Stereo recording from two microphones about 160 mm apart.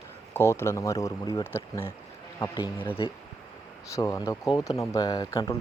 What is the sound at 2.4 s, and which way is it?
Speech, 25° left (ahead or behind).